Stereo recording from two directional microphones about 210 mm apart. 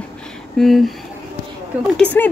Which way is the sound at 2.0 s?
10° left (ahead or behind).